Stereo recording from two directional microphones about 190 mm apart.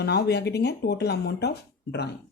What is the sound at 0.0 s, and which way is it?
Speech, 60° left (ahead or behind).